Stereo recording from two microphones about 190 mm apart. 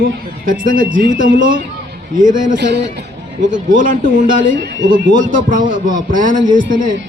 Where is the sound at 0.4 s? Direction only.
45° right (ahead or behind).